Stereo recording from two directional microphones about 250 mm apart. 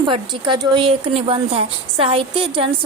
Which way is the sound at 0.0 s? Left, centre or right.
Centre.